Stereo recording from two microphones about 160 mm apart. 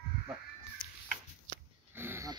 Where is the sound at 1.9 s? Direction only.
15° right (ahead or behind).